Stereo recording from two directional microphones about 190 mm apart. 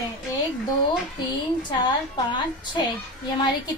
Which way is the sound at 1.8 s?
25° left (ahead or behind).